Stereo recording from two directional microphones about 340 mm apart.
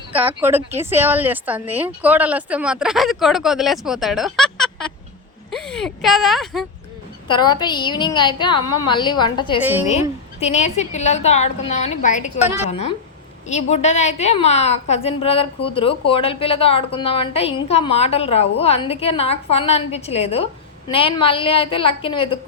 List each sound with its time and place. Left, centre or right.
0.1 s a woman's voice: centre
7.3 s a woman's voice: centre
13.5 s a woman's voice: centre